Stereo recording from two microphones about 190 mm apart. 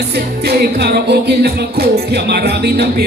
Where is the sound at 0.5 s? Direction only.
55° right (ahead or behind).